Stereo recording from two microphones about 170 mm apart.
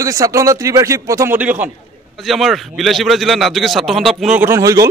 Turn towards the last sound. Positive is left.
turn(degrees=-20)  # may be behind; listen again after turning